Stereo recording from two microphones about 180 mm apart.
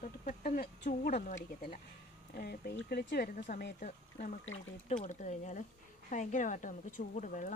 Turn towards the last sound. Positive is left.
turn(degrees=45)  # may be behind; listen again after turning